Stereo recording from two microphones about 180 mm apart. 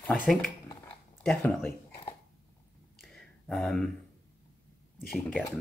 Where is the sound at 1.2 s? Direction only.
5° left (ahead or behind).